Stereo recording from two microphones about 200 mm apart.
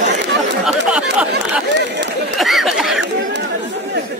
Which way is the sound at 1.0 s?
60° right (ahead or behind).